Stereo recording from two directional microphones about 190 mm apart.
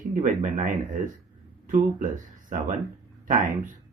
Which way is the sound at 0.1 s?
40° right (ahead or behind).